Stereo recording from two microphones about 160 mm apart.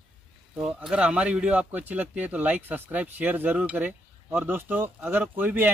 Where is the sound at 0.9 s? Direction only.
5° right (ahead or behind).